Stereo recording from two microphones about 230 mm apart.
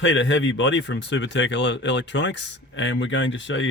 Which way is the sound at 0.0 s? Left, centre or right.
Left.